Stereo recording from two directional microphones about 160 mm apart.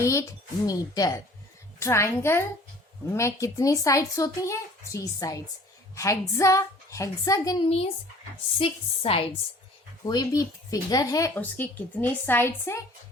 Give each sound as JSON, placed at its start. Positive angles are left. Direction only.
{"t": 0.0, "sound": "a child's voice", "side_deg": 20}
{"t": 8.5, "sound": "speech", "side_deg": 35}
{"t": 10.1, "sound": "a child's voice", "side_deg": 25}
{"t": 11.3, "sound": "speech", "side_deg": 10}